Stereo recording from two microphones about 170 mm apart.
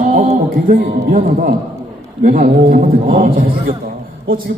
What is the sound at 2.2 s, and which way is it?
A man's voice, 55° right (ahead or behind).